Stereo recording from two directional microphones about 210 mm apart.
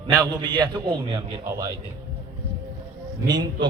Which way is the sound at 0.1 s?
20° right (ahead or behind).